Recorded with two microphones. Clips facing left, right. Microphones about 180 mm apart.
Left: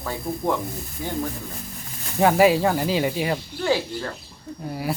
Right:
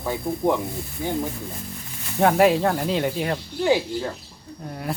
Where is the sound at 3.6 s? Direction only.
15° right (ahead or behind).